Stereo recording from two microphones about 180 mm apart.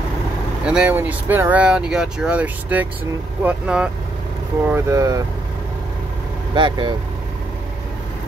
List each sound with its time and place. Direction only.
0.7 s speech: 5° right (ahead or behind)
6.5 s speech: 25° right (ahead or behind)